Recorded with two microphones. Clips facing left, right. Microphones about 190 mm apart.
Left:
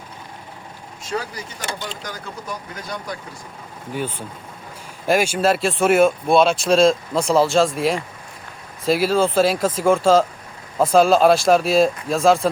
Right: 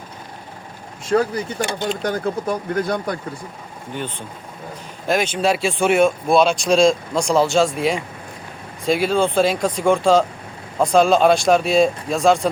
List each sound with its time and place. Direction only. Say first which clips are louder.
1.1 s speech: right 9 dB; 60° right (ahead or behind)
3.9 s speech: left 2 dB; 5° left (ahead or behind)